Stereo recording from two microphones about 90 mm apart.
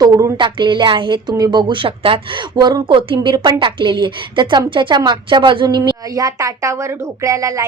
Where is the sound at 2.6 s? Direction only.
55° right (ahead or behind).